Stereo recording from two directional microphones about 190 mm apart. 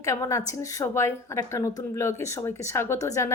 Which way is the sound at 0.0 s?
15° left (ahead or behind).